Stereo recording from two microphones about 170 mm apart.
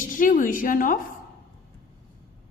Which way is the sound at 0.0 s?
50° left (ahead or behind).